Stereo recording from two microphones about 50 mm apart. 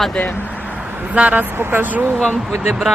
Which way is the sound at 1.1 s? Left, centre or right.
Right.